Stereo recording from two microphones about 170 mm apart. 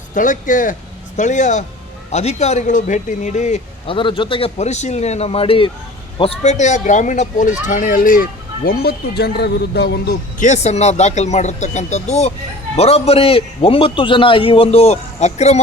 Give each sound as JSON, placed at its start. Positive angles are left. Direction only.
{"t": 0.1, "sound": "speech", "side_deg": 50}
{"t": 3.8, "sound": "a man's voice", "side_deg": 30}
{"t": 10.4, "sound": "a man's voice", "side_deg": 45}